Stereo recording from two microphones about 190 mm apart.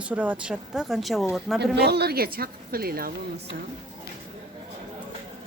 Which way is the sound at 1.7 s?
60° right (ahead or behind).